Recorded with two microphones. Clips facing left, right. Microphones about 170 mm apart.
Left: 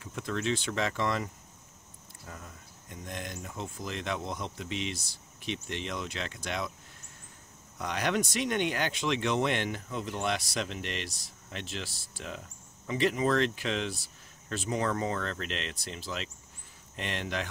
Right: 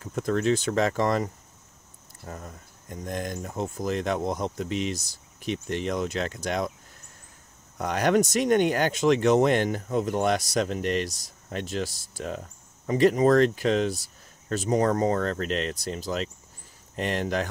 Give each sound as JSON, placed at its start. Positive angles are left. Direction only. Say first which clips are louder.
{"t": 0.0, "sound": "speech", "louder": "right 8 dB", "side_deg": -45}
{"t": 7.7, "sound": "speech", "louder": "right 8 dB", "side_deg": -45}